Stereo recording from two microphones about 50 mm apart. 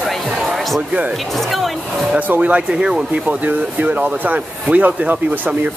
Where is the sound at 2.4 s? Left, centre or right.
Right.